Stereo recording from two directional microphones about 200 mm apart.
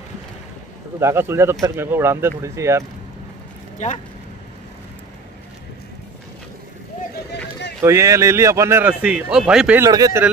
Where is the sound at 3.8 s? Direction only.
35° left (ahead or behind).